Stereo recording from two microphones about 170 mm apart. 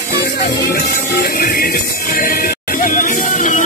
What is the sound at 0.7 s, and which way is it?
Music, 60° left (ahead or behind).